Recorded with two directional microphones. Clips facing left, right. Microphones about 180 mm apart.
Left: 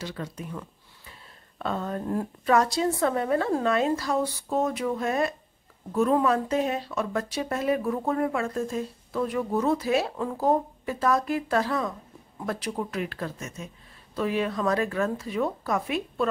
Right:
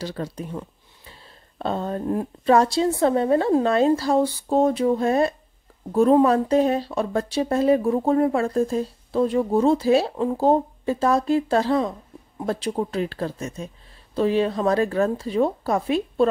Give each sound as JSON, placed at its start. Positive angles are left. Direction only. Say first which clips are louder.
{"t": 0.0, "sound": "a woman's voice", "louder": "right 5 dB", "side_deg": -35}